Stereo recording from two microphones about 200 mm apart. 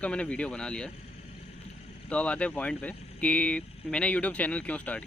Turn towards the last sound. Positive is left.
turn(degrees=5)  # may be behind; listen again after turning